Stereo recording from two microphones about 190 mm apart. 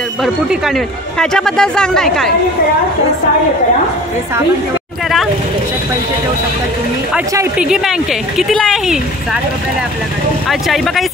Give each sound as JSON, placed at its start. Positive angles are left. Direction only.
{"t": 0.2, "sound": "speech", "side_deg": 0}
{"t": 7.2, "sound": "speech", "side_deg": -5}
{"t": 10.5, "sound": "speech", "side_deg": 0}